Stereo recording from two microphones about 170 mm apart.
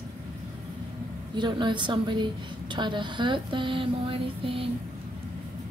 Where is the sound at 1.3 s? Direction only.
25° right (ahead or behind).